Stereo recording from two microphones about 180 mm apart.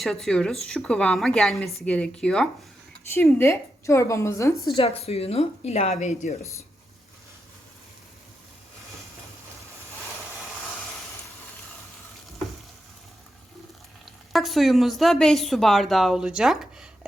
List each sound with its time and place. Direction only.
0.0 s a woman's voice: centre (ahead or behind)
4.8 s a woman's voice: 35° left (ahead or behind)
14.0 s a woman's voice: centre (ahead or behind)